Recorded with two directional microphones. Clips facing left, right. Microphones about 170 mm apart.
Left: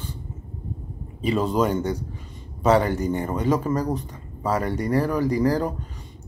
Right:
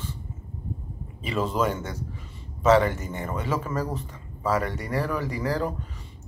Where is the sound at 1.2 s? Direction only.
35° left (ahead or behind).